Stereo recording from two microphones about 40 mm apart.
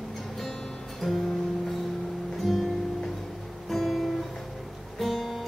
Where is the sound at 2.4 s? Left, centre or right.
Centre.